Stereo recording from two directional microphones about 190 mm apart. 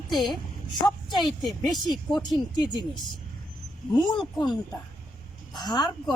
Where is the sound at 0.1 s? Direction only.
Centre (ahead or behind).